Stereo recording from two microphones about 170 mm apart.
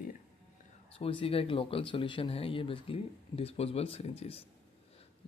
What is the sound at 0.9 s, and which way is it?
Speech, 30° left (ahead or behind).